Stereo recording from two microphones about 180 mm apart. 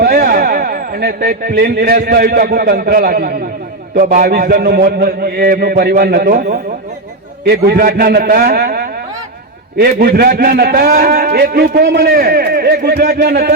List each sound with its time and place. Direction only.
0.0 s a man's voice: 55° right (ahead or behind)
7.4 s a man's voice: 60° right (ahead or behind)